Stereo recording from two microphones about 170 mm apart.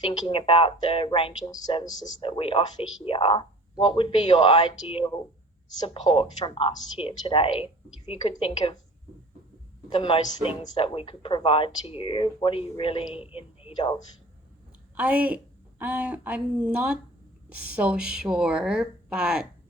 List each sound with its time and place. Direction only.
0.3 s a woman's voice: 30° left (ahead or behind)
9.9 s a woman's voice: 25° left (ahead or behind)
14.9 s a woman's voice: 10° right (ahead or behind)